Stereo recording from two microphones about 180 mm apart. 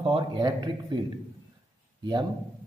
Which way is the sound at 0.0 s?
30° right (ahead or behind).